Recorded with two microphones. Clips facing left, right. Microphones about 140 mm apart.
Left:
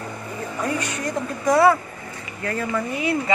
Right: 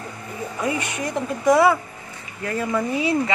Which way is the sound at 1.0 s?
20° right (ahead or behind).